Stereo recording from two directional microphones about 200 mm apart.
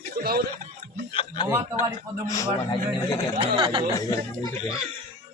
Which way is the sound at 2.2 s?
15° left (ahead or behind).